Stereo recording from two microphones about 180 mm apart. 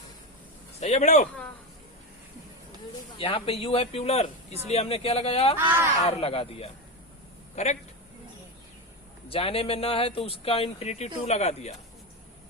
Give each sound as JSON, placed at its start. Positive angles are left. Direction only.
{"t": 0.8, "sound": "speech", "side_deg": 35}
{"t": 3.2, "sound": "speech", "side_deg": 30}
{"t": 5.5, "sound": "speech", "side_deg": -15}
{"t": 6.0, "sound": "a man's voice", "side_deg": 35}
{"t": 9.3, "sound": "speech", "side_deg": 30}